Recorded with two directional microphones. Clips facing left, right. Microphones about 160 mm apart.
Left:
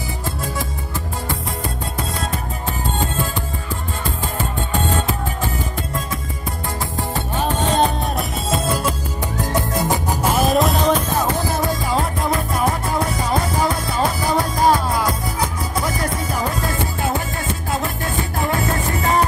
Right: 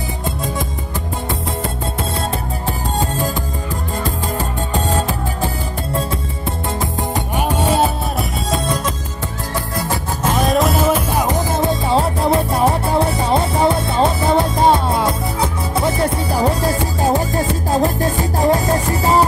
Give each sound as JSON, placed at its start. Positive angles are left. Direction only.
{"t": 7.3, "sound": "music", "side_deg": -10}
{"t": 9.5, "sound": "music", "side_deg": 20}
{"t": 10.3, "sound": "music", "side_deg": 0}